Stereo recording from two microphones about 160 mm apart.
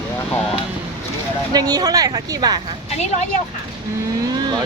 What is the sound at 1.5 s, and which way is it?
Speech, 25° right (ahead or behind).